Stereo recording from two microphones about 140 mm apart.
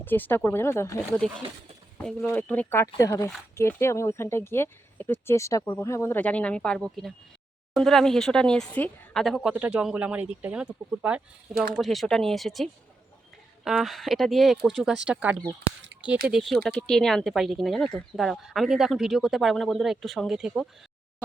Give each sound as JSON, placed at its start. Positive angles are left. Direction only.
{"t": 0.0, "sound": "speech", "side_deg": 15}
{"t": 1.2, "sound": "speech", "side_deg": 5}